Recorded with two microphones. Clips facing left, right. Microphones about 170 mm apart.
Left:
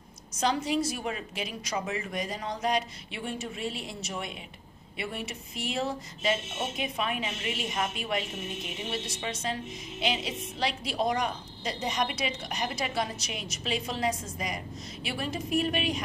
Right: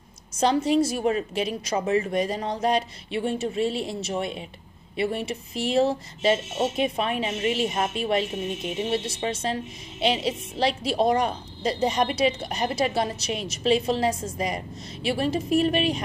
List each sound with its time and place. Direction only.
0.4 s a woman's voice: 30° right (ahead or behind)